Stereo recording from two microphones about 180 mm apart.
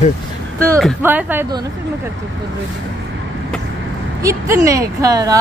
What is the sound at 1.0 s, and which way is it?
Speech, 10° right (ahead or behind).